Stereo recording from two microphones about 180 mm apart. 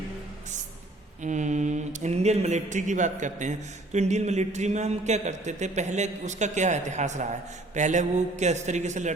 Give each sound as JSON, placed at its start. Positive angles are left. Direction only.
{"t": 1.2, "sound": "mantra", "side_deg": -40}